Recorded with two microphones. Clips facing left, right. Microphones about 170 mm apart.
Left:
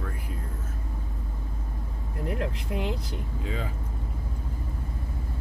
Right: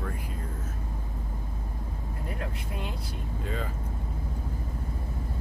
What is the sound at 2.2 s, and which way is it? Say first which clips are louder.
Speech: left 7 dB; 70° left (ahead or behind).